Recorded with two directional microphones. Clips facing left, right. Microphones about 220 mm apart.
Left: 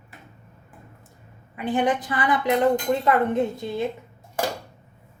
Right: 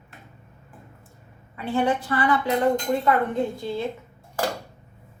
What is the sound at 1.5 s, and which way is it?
A woman's voice, 15° left (ahead or behind).